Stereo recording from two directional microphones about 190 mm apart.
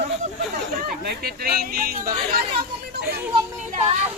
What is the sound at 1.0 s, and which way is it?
Speech, 55° right (ahead or behind).